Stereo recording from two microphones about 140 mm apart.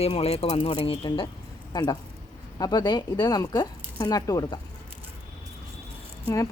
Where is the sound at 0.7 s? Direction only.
35° left (ahead or behind).